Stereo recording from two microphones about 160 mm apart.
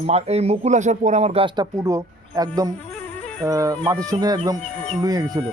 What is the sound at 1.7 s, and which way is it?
Speech, 20° right (ahead or behind).